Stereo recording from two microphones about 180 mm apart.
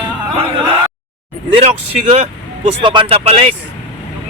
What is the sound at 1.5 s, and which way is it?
Speech, 35° right (ahead or behind).